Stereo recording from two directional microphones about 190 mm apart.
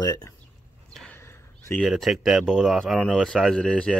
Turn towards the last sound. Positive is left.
turn(degrees=5)  # may be behind; listen again after turning